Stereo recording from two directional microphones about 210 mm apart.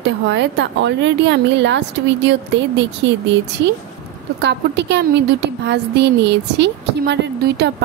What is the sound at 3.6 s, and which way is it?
Speech, 60° right (ahead or behind).